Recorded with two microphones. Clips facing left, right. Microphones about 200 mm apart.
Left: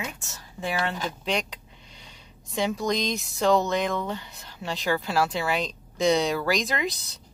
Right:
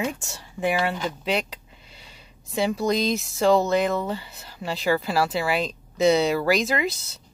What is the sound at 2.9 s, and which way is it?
Speech, 5° right (ahead or behind).